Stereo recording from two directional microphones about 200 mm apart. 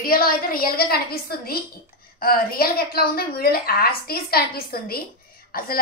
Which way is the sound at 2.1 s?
50° left (ahead or behind).